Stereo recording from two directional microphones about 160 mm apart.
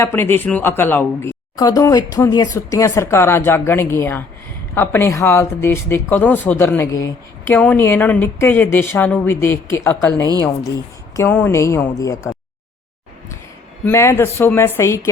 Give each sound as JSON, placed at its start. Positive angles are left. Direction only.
{"t": 0.0, "sound": "speech", "side_deg": 15}
{"t": 13.8, "sound": "speech", "side_deg": 15}